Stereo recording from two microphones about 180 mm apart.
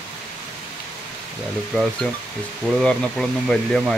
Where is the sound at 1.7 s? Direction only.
5° left (ahead or behind).